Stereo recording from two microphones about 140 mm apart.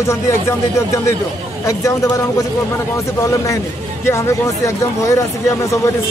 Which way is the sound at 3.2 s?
20° left (ahead or behind).